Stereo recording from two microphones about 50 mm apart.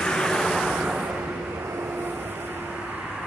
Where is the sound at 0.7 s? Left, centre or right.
Centre.